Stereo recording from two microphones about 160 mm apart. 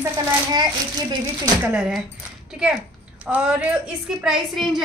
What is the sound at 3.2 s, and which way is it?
A woman's voice, 5° right (ahead or behind).